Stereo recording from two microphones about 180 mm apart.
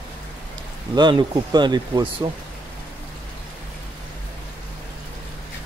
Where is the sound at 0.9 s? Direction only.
25° right (ahead or behind).